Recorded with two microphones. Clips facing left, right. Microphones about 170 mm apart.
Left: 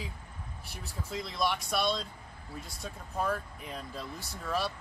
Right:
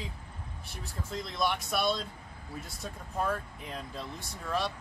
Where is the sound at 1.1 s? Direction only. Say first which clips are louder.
Even; centre (ahead or behind).